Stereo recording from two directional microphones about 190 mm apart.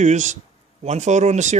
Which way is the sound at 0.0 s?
40° right (ahead or behind).